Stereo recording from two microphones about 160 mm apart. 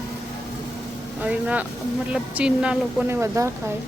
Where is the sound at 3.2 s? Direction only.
15° right (ahead or behind).